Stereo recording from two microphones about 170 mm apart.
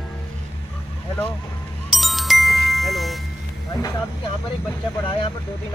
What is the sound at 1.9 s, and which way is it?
Chime, centre (ahead or behind).